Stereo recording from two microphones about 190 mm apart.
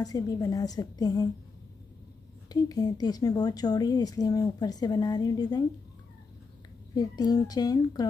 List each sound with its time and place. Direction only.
0.0 s a woman's voice: 20° left (ahead or behind)
2.5 s a woman's voice: 20° left (ahead or behind)
7.0 s a woman's voice: 20° left (ahead or behind)